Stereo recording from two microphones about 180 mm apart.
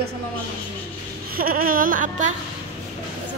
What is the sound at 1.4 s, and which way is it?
Speech, 50° right (ahead or behind).